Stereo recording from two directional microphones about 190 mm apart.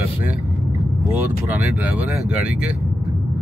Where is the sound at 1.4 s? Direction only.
10° right (ahead or behind).